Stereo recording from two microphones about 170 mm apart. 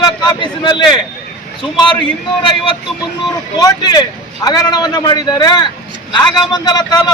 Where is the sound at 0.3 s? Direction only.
25° left (ahead or behind).